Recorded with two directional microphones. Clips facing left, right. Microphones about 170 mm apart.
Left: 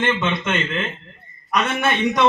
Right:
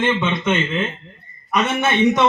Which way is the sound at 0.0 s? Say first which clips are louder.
Right 2 dB; 15° right (ahead or behind).